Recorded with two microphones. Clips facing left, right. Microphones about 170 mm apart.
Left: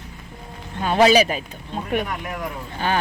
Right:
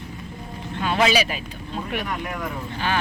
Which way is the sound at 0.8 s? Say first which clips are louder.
Left 5 dB; 40° left (ahead or behind).